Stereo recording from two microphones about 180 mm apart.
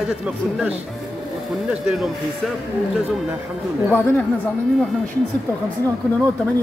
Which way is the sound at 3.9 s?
10° left (ahead or behind).